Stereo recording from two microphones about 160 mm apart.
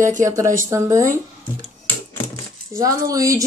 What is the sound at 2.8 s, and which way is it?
Speech, 20° right (ahead or behind).